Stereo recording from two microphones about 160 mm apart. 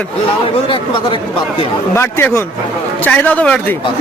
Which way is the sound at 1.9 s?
15° left (ahead or behind).